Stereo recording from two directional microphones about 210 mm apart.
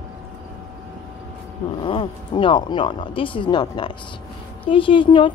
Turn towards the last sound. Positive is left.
turn(degrees=25)  # may be behind; listen again after turning